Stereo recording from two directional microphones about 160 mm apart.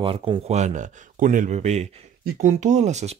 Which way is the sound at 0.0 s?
35° right (ahead or behind).